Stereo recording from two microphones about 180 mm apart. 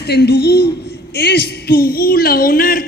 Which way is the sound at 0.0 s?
65° left (ahead or behind).